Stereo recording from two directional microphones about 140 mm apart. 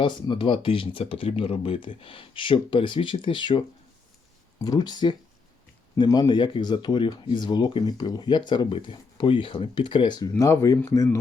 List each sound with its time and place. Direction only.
0.0 s speech: 35° left (ahead or behind)
4.6 s speech: 30° left (ahead or behind)